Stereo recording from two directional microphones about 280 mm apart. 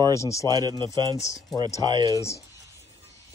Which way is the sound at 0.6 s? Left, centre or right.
Centre.